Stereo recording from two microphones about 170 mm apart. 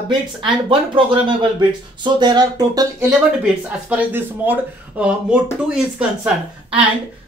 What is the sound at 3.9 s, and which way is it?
Speech, 10° right (ahead or behind).